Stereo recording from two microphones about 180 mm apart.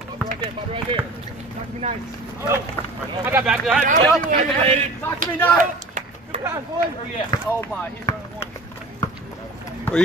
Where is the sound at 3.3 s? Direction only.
10° right (ahead or behind).